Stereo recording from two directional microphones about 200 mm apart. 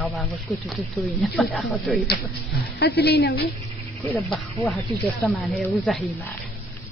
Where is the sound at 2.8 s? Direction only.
50° left (ahead or behind).